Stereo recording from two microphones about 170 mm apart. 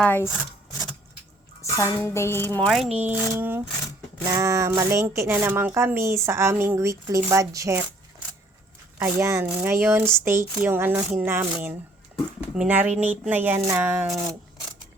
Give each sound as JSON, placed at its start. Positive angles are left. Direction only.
{"t": 0.0, "sound": "speech", "side_deg": 10}
{"t": 1.6, "sound": "speech", "side_deg": 15}
{"t": 2.6, "sound": "speech", "side_deg": 0}
{"t": 3.1, "sound": "speech", "side_deg": -10}
{"t": 9.0, "sound": "speech", "side_deg": -15}